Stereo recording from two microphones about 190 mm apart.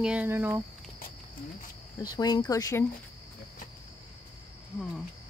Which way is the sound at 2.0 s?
20° left (ahead or behind).